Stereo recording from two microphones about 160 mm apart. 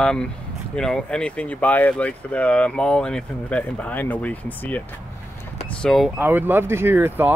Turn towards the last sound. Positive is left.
turn(degrees=-10)  # may be behind; listen again after turning